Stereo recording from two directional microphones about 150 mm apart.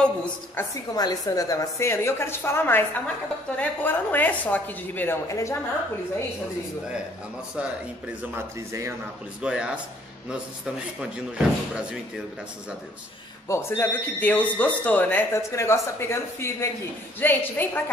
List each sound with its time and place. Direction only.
0.0 s speech: 10° left (ahead or behind)
0.9 s speech: 25° left (ahead or behind)
8.2 s speech: 15° right (ahead or behind)
9.4 s speech: 5° right (ahead or behind)
11.0 s speech: 5° right (ahead or behind)
13.5 s speech: 15° left (ahead or behind)